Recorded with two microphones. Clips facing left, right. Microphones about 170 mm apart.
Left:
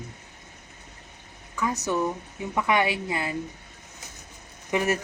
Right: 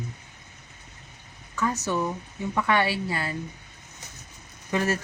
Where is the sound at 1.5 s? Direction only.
15° left (ahead or behind).